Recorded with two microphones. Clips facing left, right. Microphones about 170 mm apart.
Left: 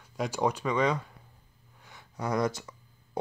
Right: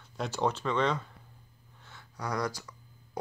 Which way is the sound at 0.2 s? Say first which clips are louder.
Left 2 dB; 10° left (ahead or behind).